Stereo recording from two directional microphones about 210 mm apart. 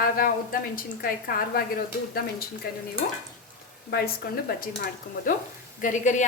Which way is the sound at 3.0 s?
55° left (ahead or behind).